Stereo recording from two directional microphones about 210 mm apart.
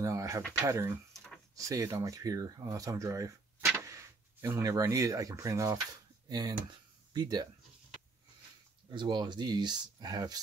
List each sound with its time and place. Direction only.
0.0 s pigeon: 15° right (ahead or behind)
0.5 s speech: 15° right (ahead or behind)
1.1 s a sound: 5° left (ahead or behind)
1.6 s speech: 15° right (ahead or behind)
8.8 s speech: 20° right (ahead or behind)